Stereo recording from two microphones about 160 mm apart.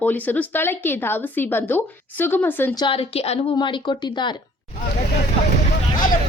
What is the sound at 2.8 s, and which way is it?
A woman's voice, 35° left (ahead or behind).